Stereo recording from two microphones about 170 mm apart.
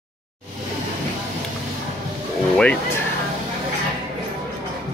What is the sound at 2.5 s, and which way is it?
Music, 5° left (ahead or behind).